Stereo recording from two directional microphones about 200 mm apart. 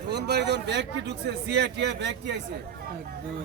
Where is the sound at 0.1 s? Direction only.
55° right (ahead or behind).